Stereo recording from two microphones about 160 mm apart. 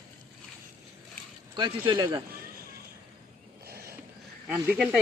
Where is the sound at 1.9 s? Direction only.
30° right (ahead or behind).